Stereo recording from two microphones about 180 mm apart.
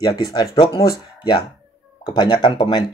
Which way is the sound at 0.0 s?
20° left (ahead or behind).